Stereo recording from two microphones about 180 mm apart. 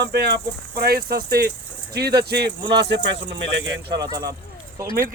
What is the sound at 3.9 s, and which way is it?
Speech, 20° right (ahead or behind).